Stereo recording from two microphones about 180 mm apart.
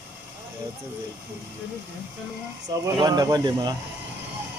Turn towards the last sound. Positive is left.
turn(degrees=-25)  # may be behind; listen again after turning